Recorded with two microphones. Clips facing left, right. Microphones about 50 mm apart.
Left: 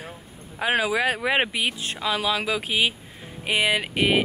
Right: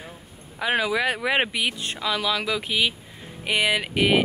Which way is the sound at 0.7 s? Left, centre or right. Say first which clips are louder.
Left 1 dB; centre.